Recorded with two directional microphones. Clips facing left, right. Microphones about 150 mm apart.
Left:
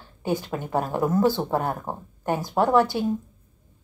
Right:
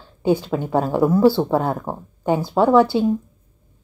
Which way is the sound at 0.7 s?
90° right.